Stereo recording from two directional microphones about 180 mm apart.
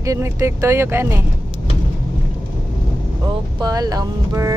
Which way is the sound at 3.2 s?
20° right (ahead or behind).